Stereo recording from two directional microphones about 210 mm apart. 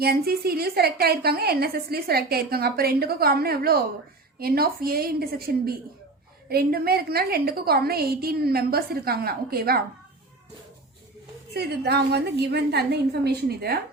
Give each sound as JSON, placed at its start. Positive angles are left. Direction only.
{"t": 0.0, "sound": "a woman's voice", "side_deg": -45}
{"t": 11.5, "sound": "a woman's voice", "side_deg": -50}